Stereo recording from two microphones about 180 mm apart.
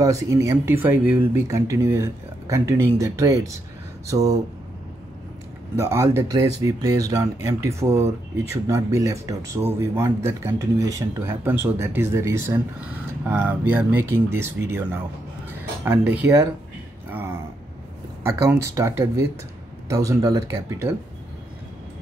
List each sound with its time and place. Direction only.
0.0 s speech: 20° right (ahead or behind)
5.8 s speech: 15° right (ahead or behind)